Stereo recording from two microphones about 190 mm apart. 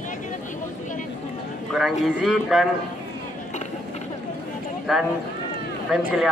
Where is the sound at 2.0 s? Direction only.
Centre (ahead or behind).